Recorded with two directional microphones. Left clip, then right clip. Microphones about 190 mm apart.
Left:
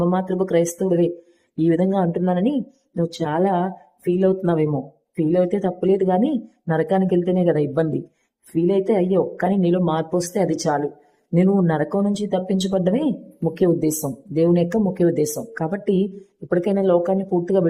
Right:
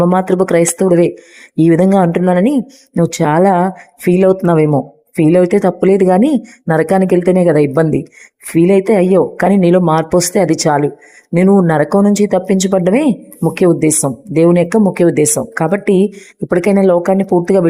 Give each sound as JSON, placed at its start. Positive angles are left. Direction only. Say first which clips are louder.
{"t": 0.1, "sound": "speech", "louder": "right 9 dB", "side_deg": -35}